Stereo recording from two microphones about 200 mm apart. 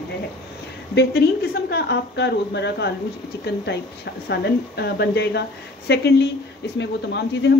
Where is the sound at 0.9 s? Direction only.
55° left (ahead or behind).